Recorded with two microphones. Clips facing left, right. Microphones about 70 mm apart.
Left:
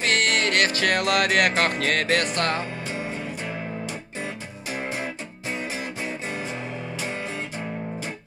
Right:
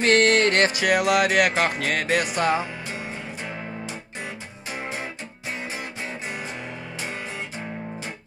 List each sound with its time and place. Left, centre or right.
0.0 s music: right
0.7 s music: centre